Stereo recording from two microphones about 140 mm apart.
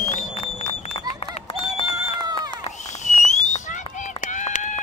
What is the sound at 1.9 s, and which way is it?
Run, 25° right (ahead or behind).